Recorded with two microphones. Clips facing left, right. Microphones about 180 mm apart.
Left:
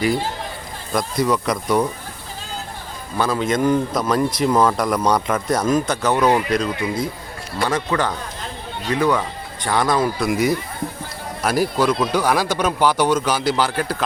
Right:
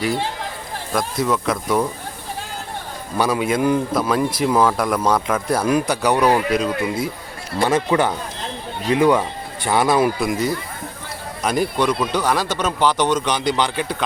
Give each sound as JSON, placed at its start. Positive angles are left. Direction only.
{"t": 0.9, "sound": "speech", "side_deg": 0}
{"t": 3.2, "sound": "speech", "side_deg": -10}
{"t": 7.6, "sound": "speech", "side_deg": -20}
{"t": 10.2, "sound": "a man's voice", "side_deg": 10}